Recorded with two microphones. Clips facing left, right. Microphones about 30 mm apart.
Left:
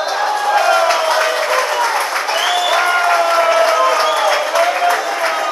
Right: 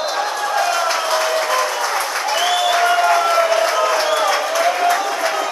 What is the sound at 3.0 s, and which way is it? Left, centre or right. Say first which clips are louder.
Applause: left 1 dB; left.